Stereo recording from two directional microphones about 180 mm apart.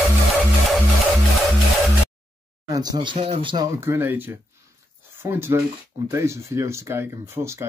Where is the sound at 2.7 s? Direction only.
20° right (ahead or behind).